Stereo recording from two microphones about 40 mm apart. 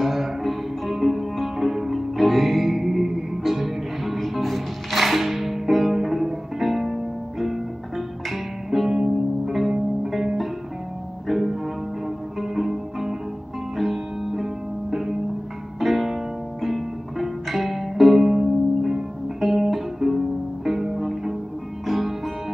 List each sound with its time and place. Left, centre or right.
0.0 s music: centre